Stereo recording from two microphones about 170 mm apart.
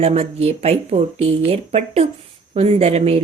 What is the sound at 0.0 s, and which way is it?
Speech, 40° right (ahead or behind).